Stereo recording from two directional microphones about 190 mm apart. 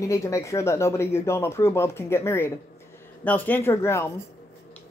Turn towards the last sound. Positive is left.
turn(degrees=15)  # may be behind; listen again after turning